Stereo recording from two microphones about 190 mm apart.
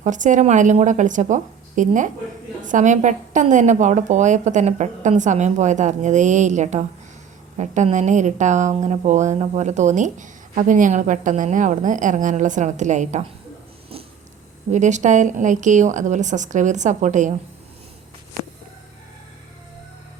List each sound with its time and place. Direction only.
0.0 s a woman's voice: 40° right (ahead or behind)
14.7 s a woman's voice: 40° right (ahead or behind)